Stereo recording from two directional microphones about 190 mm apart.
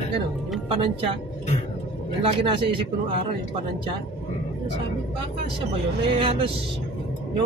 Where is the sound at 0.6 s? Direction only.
30° right (ahead or behind).